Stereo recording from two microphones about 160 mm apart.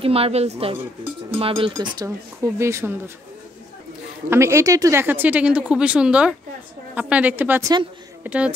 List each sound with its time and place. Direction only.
0.0 s a woman's voice: 35° right (ahead or behind)
1.7 s speech: 20° right (ahead or behind)
4.3 s speech: 15° right (ahead or behind)